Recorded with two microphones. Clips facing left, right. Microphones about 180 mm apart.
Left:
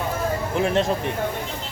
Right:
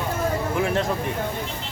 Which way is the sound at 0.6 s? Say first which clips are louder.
Left 3 dB; 25° left (ahead or behind).